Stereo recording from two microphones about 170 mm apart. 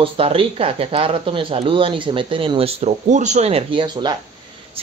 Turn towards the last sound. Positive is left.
turn(degrees=-35)  # may be behind; listen again after turning